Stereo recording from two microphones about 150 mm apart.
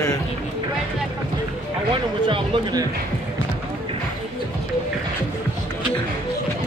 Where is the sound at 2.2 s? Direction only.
35° right (ahead or behind).